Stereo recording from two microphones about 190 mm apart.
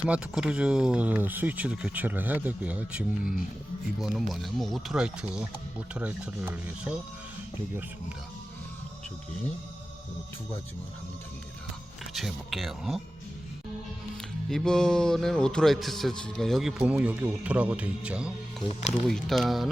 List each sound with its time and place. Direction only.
0.0 s a man's voice: 5° right (ahead or behind)
12.1 s a man's voice: centre (ahead or behind)
14.5 s a man's voice: 5° left (ahead or behind)